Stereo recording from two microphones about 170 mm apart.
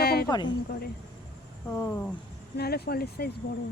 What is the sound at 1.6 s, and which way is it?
Speech, 15° left (ahead or behind).